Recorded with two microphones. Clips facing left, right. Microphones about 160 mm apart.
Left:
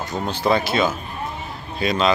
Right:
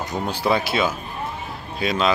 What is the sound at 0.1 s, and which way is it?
Speech, 10° right (ahead or behind).